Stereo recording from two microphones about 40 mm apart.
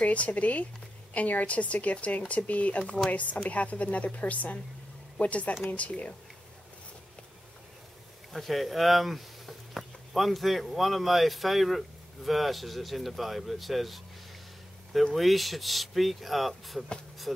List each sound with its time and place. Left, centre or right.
0.0 s speech: left
8.3 s speech: centre
15.1 s speech: centre